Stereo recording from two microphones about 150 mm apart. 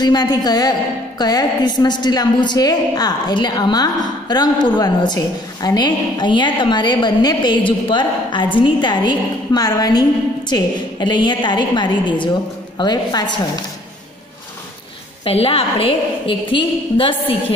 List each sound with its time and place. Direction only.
0.0 s a woman's voice: 25° left (ahead or behind)
15.2 s a woman's voice: 40° left (ahead or behind)